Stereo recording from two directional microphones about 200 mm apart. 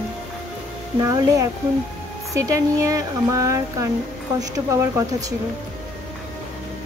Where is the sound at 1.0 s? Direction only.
15° right (ahead or behind).